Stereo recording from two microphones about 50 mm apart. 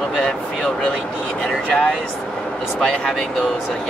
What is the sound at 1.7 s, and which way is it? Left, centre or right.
Speech, centre.